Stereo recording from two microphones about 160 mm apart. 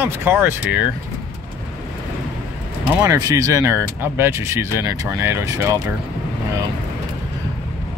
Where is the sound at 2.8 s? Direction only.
15° right (ahead or behind).